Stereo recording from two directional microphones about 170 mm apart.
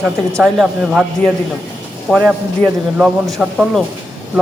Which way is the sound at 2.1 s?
Centre (ahead or behind).